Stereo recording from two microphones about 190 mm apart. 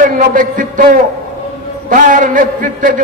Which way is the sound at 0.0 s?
45° right (ahead or behind).